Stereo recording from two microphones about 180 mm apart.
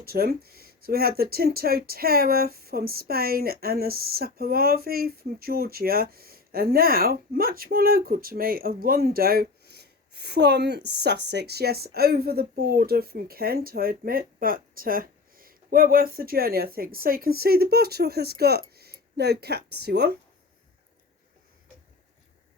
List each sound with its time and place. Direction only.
0.0 s speech: 60° right (ahead or behind)